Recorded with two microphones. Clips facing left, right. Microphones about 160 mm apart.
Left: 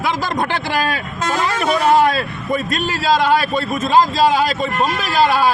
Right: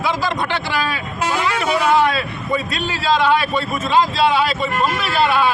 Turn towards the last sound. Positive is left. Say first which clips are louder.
# left 2 dB
turn(degrees=40)  # may be behind; listen again after turning